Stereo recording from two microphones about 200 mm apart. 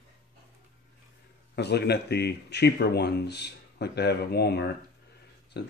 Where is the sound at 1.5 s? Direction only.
55° left (ahead or behind).